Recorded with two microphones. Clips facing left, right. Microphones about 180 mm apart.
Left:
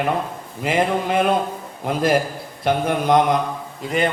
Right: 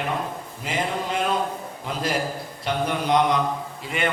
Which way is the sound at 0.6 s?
60° left (ahead or behind).